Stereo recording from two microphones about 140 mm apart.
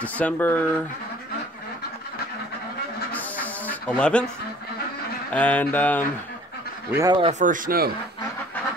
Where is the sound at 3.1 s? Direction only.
10° left (ahead or behind).